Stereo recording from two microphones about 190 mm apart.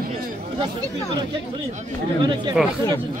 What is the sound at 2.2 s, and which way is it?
Speech, 25° right (ahead or behind).